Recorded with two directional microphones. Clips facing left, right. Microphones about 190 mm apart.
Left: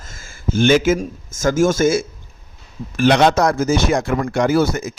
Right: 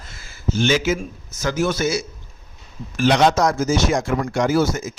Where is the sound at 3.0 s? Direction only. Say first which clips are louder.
Left 2 dB; 60° left (ahead or behind).